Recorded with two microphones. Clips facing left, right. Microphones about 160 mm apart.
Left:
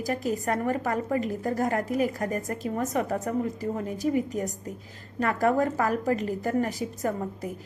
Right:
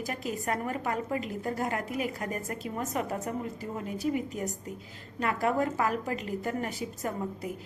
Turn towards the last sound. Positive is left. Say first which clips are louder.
# left 4 dB
turn(degrees=40)  # may be behind; listen again after turning